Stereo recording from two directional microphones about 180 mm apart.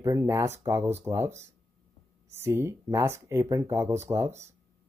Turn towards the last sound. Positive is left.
turn(degrees=-15)  # may be behind; listen again after turning